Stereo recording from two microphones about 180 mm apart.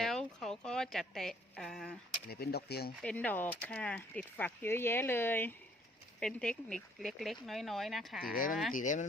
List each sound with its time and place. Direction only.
0.0 s a sound: 5° left (ahead or behind)
2.3 s speech: 60° left (ahead or behind)
3.0 s speech: 5° left (ahead or behind)
8.3 s speech: 50° left (ahead or behind)